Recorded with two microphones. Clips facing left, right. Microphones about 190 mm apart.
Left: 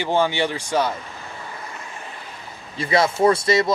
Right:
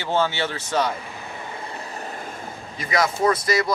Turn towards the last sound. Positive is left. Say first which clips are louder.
# left 3 dB
turn(degrees=25)  # may be behind; listen again after turning